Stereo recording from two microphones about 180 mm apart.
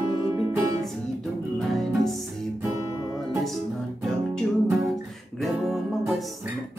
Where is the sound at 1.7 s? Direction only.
Centre (ahead or behind).